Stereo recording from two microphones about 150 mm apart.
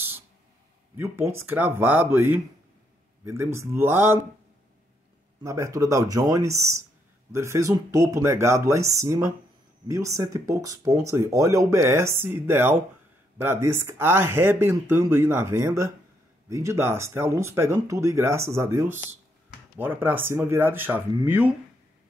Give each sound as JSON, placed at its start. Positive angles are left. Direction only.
{"t": 0.9, "sound": "speech", "side_deg": -15}
{"t": 5.4, "sound": "speech", "side_deg": -20}